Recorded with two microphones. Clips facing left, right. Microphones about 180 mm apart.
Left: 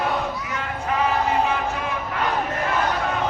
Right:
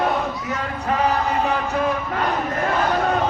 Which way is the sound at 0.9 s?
40° right (ahead or behind).